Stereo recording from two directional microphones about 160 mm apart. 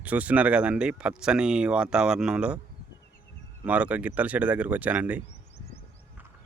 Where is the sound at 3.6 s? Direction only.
10° right (ahead or behind).